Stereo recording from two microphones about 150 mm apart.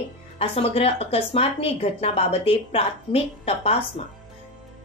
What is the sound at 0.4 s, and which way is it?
A woman's voice, 40° left (ahead or behind).